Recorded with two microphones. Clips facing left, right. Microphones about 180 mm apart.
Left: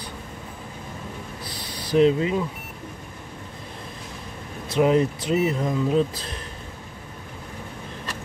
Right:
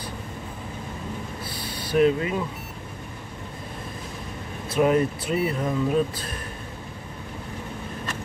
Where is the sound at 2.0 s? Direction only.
25° left (ahead or behind).